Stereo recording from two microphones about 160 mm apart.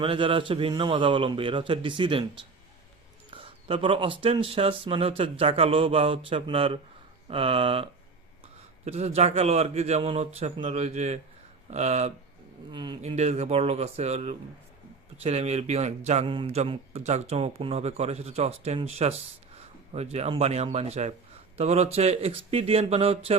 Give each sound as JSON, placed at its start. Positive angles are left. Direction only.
{"t": 0.0, "sound": "speech", "side_deg": -35}
{"t": 3.3, "sound": "speech", "side_deg": -35}
{"t": 12.7, "sound": "speech", "side_deg": -30}
{"t": 13.0, "sound": "speech", "side_deg": -40}